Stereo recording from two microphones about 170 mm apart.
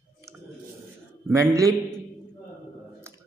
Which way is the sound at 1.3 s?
20° right (ahead or behind).